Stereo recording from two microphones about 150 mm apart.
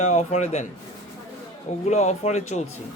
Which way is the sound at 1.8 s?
45° left (ahead or behind).